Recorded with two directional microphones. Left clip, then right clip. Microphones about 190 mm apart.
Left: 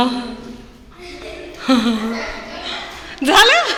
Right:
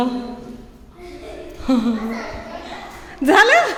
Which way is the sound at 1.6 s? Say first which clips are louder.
Left 4 dB; 5° right (ahead or behind).